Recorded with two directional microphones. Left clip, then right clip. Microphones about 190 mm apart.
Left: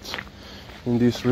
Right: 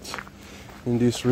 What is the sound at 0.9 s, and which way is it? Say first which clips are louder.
Speech: left 1 dB; 20° right (ahead or behind).